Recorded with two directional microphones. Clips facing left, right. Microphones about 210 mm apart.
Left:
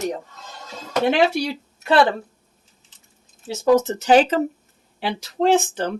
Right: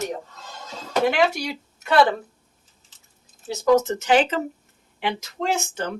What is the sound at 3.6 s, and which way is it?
Speech, 30° left (ahead or behind).